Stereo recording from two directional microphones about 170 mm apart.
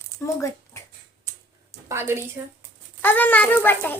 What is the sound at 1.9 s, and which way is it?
Speech, 15° right (ahead or behind).